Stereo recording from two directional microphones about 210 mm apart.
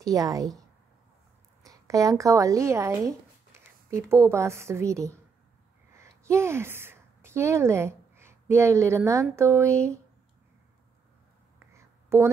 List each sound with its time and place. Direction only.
0.0 s a woman's voice: 15° right (ahead or behind)
1.6 s a woman's voice: 15° right (ahead or behind)
11.6 s a sound: 10° right (ahead or behind)